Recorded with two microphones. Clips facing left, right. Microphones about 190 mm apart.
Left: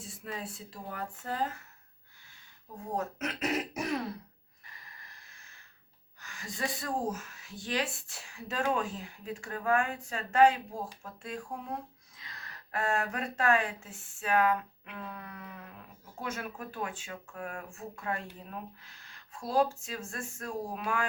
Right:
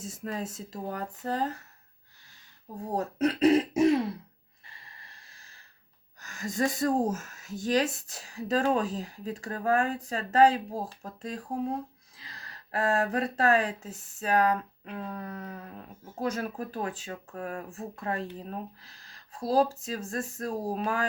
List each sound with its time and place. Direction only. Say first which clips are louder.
0.0 s speech: right 6 dB; 45° right (ahead or behind)
2.9 s speech: right 7 dB; 35° right (ahead or behind)
4.6 s a sound: right 1 dB; 30° right (ahead or behind)
6.1 s speech: right 9 dB; 45° right (ahead or behind)